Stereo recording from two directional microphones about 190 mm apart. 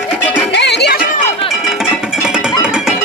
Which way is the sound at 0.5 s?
65° left (ahead or behind).